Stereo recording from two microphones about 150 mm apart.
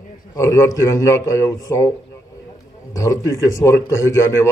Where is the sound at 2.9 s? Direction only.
20° left (ahead or behind).